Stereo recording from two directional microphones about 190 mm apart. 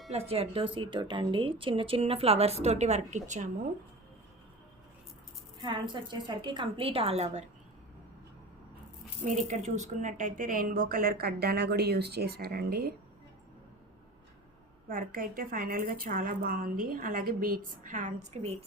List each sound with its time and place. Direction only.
0.1 s speech: 30° right (ahead or behind)
5.6 s a woman's voice: 25° right (ahead or behind)
9.2 s speech: 40° right (ahead or behind); by 12.9 s 55° right (ahead or behind)
14.8 s speech: 50° right (ahead or behind)